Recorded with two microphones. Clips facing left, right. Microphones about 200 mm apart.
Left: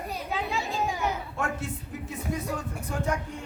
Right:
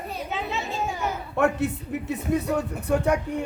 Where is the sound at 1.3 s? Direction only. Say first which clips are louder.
Right 9 dB; 65° right (ahead or behind).